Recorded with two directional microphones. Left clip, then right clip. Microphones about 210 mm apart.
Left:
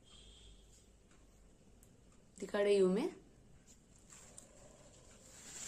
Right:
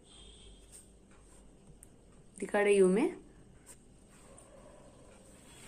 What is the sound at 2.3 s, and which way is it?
Speech, 15° left (ahead or behind).